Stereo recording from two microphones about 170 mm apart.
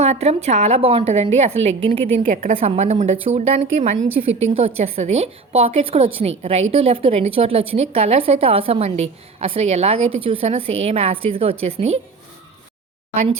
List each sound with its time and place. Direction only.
0.0 s a woman's voice: 40° right (ahead or behind)